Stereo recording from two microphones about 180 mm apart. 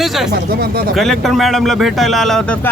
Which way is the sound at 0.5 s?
60° right (ahead or behind).